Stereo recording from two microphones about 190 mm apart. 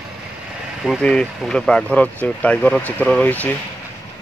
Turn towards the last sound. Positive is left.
turn(degrees=10)  # may be behind; listen again after turning